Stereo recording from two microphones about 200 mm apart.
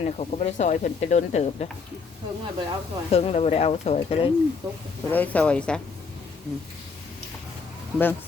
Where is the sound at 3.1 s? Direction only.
30° left (ahead or behind).